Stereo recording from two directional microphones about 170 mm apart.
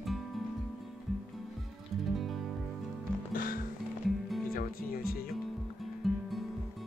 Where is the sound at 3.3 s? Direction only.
55° left (ahead or behind).